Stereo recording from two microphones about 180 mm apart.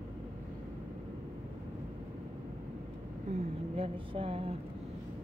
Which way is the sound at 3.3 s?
30° right (ahead or behind).